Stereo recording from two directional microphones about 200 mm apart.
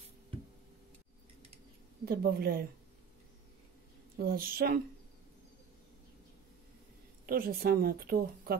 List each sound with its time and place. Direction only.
2.0 s speech: 50° right (ahead or behind)
4.2 s speech: 50° right (ahead or behind)
7.2 s speech: 50° right (ahead or behind)